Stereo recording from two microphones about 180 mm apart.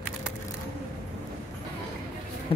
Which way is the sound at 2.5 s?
30° left (ahead or behind).